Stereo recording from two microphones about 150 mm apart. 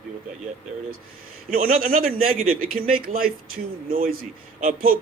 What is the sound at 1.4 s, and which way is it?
A man's voice, 70° right (ahead or behind).